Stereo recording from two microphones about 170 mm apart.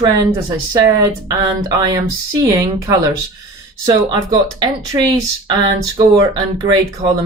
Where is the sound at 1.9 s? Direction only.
20° right (ahead or behind).